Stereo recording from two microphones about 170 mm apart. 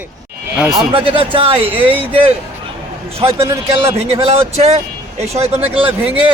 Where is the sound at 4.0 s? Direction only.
40° right (ahead or behind).